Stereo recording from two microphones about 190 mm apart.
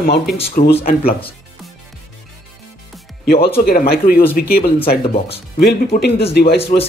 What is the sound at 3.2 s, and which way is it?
Speech, 55° left (ahead or behind).